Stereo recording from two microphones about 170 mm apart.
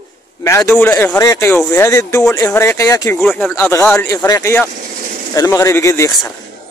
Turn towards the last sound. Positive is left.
turn(degrees=15)  # may be behind; listen again after turning